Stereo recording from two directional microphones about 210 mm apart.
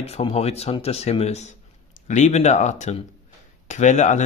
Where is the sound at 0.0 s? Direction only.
30° left (ahead or behind).